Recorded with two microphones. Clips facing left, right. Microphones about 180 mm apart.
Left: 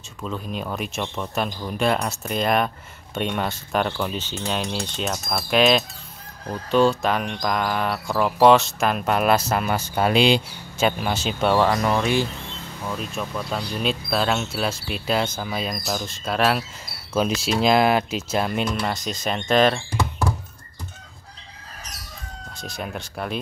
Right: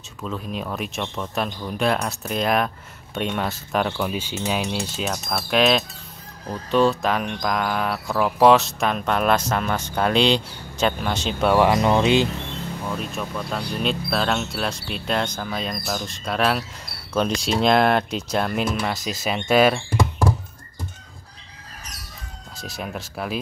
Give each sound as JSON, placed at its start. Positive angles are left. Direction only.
{"t": 0.2, "sound": "speech", "side_deg": 0}
{"t": 11.5, "sound": "speech", "side_deg": -15}
{"t": 12.9, "sound": "speech", "side_deg": 0}
{"t": 22.6, "sound": "speech", "side_deg": 0}